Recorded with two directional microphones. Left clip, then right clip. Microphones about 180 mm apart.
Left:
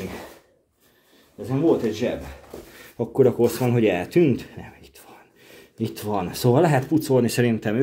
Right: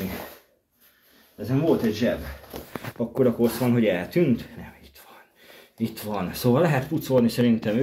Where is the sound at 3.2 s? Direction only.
50° left (ahead or behind).